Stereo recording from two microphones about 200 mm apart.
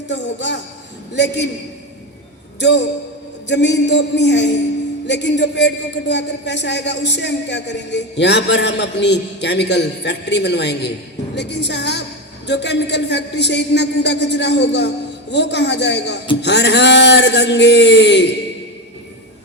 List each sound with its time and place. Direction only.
0.1 s a man's voice: 60° left (ahead or behind)
2.6 s a man's voice: 60° left (ahead or behind)